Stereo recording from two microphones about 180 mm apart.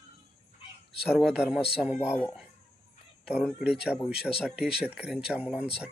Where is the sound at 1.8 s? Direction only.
5° right (ahead or behind).